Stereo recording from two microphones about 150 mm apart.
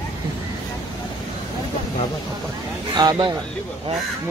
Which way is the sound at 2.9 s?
30° right (ahead or behind).